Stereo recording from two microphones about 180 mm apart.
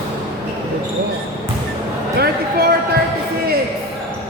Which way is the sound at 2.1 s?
60° right (ahead or behind).